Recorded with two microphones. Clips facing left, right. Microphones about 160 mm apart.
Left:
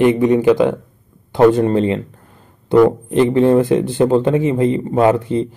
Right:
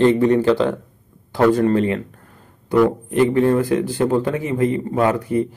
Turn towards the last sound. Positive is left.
turn(degrees=25)  # may be behind; listen again after turning